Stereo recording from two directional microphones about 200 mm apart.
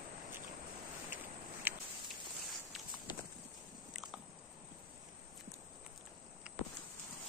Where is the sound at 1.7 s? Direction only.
10° right (ahead or behind).